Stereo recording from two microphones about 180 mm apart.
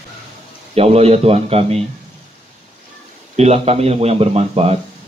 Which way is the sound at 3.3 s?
35° right (ahead or behind).